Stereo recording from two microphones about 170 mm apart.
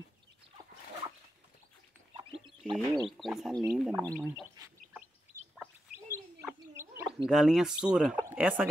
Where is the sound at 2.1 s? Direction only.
30° right (ahead or behind).